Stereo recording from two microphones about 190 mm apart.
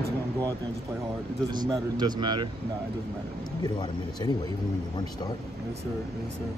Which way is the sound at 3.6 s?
20° left (ahead or behind).